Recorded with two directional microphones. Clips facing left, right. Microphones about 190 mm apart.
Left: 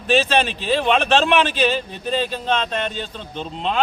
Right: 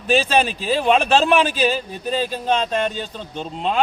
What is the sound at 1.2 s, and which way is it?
Speech, 40° right (ahead or behind).